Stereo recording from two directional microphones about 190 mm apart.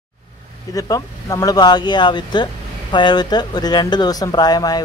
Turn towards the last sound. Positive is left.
turn(degrees=20)  # may be behind; listen again after turning